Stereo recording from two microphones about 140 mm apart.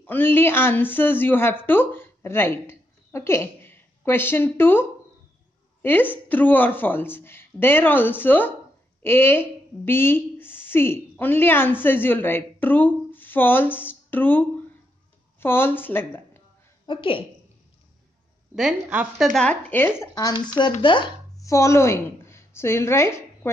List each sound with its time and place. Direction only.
0.0 s a woman's voice: 15° left (ahead or behind)
15.4 s a woman's voice: 15° left (ahead or behind)
16.8 s a woman's voice: 35° left (ahead or behind)
18.5 s speech: 5° right (ahead or behind); by 20.3 s 25° left (ahead or behind)
20.8 s speech: 35° left (ahead or behind)
21.4 s a woman's voice: 20° left (ahead or behind)